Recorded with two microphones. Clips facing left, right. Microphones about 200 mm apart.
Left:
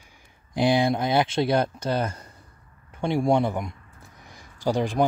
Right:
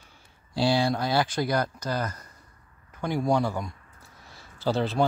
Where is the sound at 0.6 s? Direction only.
20° left (ahead or behind).